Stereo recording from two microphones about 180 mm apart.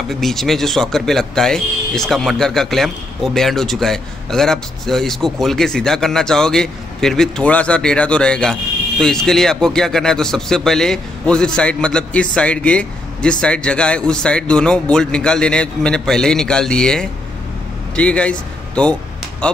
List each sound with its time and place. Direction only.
0.1 s speech: centre (ahead or behind)